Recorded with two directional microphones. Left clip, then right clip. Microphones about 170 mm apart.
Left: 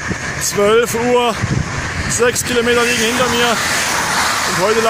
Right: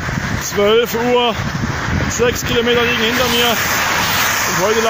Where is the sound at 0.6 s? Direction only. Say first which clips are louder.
Even; 5° right (ahead or behind).